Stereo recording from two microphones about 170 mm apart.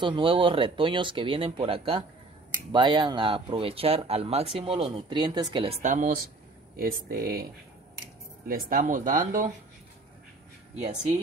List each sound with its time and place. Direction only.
0.0 s speech: 30° right (ahead or behind)
5.8 s speech: 45° right (ahead or behind); by 7.4 s 60° right (ahead or behind)
8.5 s speech: 55° right (ahead or behind)